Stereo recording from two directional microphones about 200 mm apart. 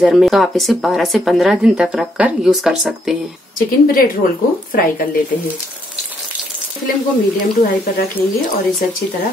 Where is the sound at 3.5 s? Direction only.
45° left (ahead or behind).